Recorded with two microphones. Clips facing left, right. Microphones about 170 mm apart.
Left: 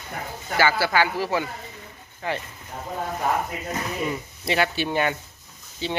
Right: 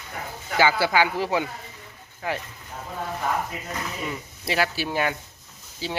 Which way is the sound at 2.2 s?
5° right (ahead or behind).